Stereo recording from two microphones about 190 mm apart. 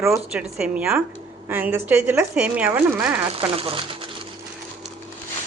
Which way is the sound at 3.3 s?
30° right (ahead or behind).